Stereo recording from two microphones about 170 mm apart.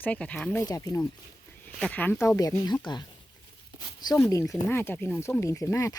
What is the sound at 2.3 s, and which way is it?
Speech, 20° left (ahead or behind).